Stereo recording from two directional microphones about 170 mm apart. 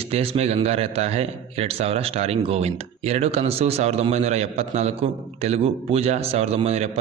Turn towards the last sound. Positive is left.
turn(degrees=-35)  # may be behind; listen again after turning